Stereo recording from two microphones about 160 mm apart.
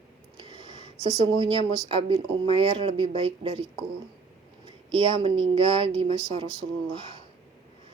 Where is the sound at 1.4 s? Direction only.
35° right (ahead or behind).